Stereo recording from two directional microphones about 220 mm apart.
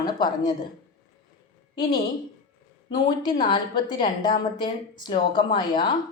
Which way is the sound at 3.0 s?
20° left (ahead or behind).